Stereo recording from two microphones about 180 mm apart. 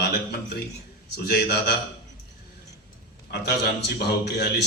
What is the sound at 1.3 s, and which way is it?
Speech, 60° left (ahead or behind).